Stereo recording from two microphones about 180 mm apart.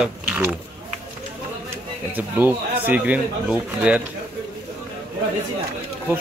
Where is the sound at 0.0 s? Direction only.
5° right (ahead or behind).